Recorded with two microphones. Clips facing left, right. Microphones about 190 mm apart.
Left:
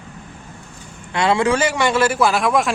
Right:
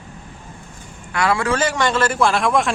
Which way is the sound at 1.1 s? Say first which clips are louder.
Left 3 dB; 20° left (ahead or behind).